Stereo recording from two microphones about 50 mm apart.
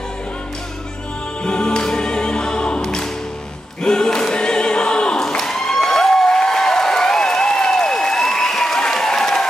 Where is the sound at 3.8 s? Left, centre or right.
Centre.